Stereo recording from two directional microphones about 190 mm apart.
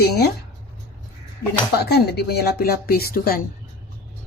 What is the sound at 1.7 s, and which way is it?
Speech, 55° left (ahead or behind).